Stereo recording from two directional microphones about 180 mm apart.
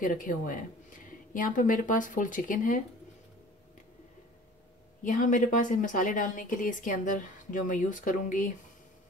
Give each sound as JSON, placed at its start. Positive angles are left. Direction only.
{"t": 0.0, "sound": "a woman's voice", "side_deg": 50}
{"t": 5.0, "sound": "a woman's voice", "side_deg": 45}